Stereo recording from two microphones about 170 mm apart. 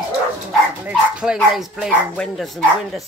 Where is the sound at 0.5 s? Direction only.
5° right (ahead or behind).